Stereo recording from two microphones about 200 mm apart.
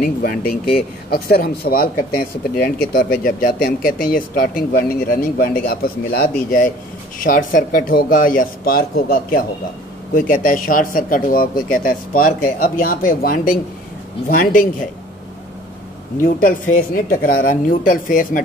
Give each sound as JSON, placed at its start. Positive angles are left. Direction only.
{"t": 0.0, "sound": "speech", "side_deg": 50}
{"t": 16.2, "sound": "speech", "side_deg": 45}